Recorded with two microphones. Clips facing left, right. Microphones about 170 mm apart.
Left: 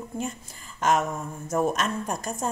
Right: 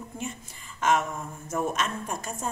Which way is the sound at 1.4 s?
40° left (ahead or behind).